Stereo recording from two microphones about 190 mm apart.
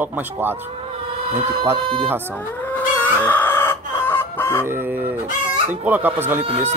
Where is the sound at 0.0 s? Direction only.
10° right (ahead or behind).